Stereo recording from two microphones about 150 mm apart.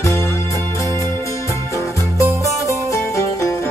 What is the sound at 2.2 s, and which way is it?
Music, 20° right (ahead or behind).